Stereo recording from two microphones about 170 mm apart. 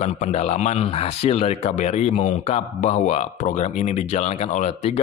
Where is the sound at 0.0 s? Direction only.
40° left (ahead or behind).